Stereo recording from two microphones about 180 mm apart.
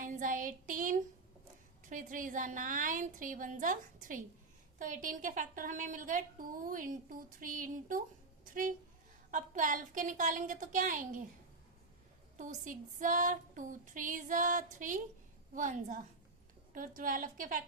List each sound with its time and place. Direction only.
0.0 s child singing: 50° right (ahead or behind)
1.9 s a woman's voice: 50° right (ahead or behind)
9.3 s a woman's voice: 45° right (ahead or behind)
12.4 s a woman's voice: 45° right (ahead or behind)